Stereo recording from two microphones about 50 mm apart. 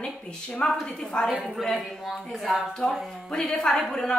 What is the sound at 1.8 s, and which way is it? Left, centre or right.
A woman's voice, centre.